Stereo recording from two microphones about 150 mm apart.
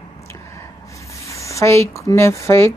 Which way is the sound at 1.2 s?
20° left (ahead or behind).